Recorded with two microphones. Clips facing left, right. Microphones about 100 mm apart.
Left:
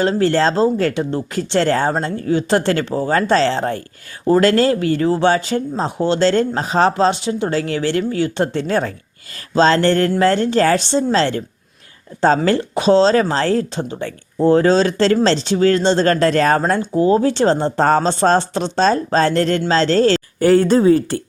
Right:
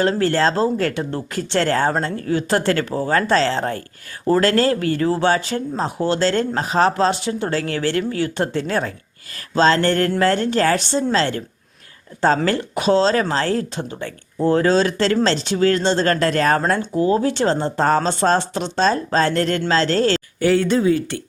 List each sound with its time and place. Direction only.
0.0 s speech: 25° left (ahead or behind)
12.5 s speech: 25° left (ahead or behind)